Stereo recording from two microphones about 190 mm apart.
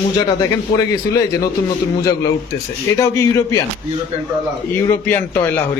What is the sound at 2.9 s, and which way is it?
Speech, 15° left (ahead or behind).